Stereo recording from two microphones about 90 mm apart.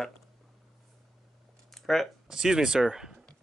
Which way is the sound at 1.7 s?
5° left (ahead or behind).